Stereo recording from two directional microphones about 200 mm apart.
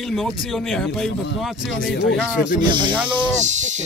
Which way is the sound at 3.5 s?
35° right (ahead or behind).